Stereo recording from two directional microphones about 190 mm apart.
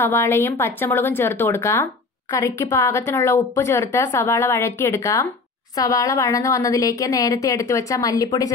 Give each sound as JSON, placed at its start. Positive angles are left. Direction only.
{"t": 0.0, "sound": "a woman's voice", "side_deg": 15}